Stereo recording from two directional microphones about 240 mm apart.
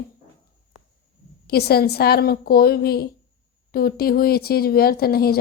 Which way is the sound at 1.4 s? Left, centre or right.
Left.